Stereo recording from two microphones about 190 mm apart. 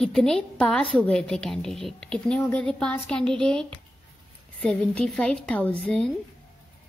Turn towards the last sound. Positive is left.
turn(degrees=5)  # may be behind; listen again after turning